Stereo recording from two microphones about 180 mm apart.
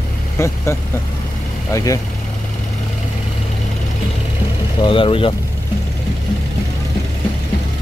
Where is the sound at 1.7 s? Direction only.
20° left (ahead or behind).